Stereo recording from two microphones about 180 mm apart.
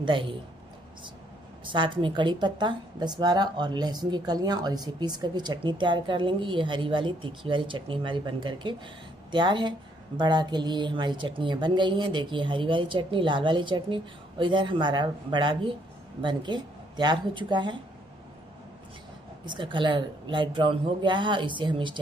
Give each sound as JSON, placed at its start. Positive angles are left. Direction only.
{"t": 0.0, "sound": "speech", "side_deg": -30}
{"t": 1.6, "sound": "speech", "side_deg": -25}
{"t": 19.4, "sound": "speech", "side_deg": -25}